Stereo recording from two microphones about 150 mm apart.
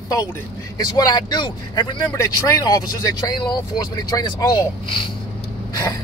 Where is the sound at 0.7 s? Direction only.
25° left (ahead or behind).